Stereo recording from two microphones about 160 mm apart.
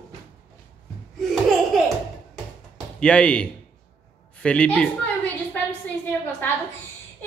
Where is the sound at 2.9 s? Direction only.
5° left (ahead or behind).